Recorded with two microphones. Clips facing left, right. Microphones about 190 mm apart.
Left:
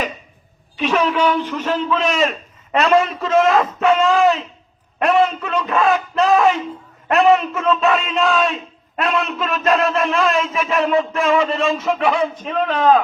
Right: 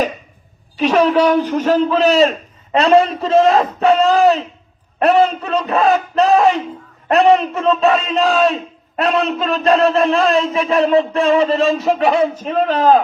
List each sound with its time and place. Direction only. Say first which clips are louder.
0.8 s a man's voice: right 5 dB; 35° right (ahead or behind)